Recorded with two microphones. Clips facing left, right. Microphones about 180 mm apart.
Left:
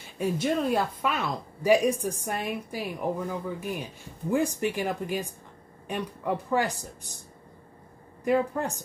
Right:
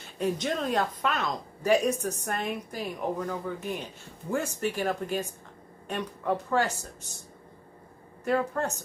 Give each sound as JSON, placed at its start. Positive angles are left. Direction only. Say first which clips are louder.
{"t": 0.2, "sound": "a woman's voice", "louder": "left 2 dB", "side_deg": 10}
{"t": 8.2, "sound": "a woman's voice", "louder": "left 2 dB", "side_deg": 15}